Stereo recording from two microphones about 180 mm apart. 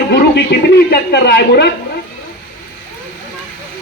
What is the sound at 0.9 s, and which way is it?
Speech, 65° left (ahead or behind).